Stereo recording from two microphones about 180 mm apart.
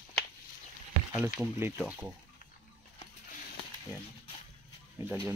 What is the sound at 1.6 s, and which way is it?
Speech, 10° right (ahead or behind).